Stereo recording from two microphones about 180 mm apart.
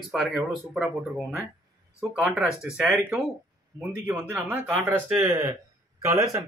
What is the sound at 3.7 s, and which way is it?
A man's voice, 5° right (ahead or behind).